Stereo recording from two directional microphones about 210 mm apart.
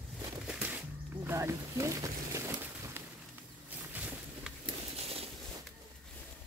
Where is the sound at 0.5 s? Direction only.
5° right (ahead or behind).